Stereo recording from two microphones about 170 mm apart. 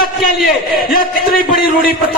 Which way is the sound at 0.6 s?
60° left (ahead or behind).